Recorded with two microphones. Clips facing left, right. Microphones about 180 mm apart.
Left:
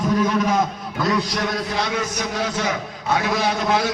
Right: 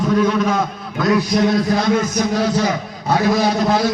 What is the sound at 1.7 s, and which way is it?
A man's voice, 45° right (ahead or behind).